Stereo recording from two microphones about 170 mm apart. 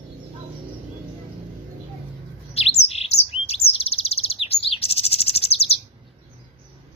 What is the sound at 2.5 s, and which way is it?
Bird, 35° left (ahead or behind).